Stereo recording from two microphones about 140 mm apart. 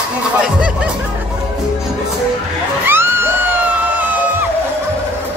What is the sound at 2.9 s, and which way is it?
Music, 15° right (ahead or behind).